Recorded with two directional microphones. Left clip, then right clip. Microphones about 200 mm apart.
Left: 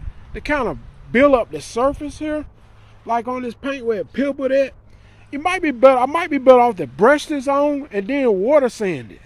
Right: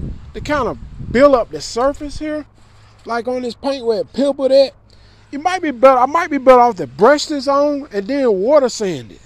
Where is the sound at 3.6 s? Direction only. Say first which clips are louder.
Right 4 dB; 50° right (ahead or behind).